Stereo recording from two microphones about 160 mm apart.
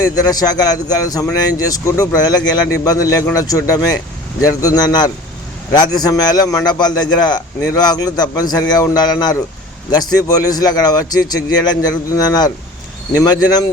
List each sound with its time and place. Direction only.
0.0 s a man's voice: 25° left (ahead or behind)